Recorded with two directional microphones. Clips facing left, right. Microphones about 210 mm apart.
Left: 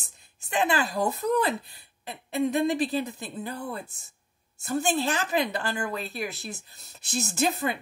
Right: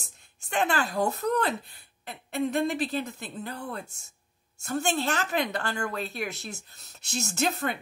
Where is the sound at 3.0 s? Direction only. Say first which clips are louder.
Left 2 dB; 10° left (ahead or behind).